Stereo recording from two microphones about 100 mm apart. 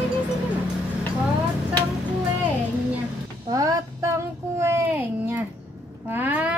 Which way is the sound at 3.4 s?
35° right (ahead or behind).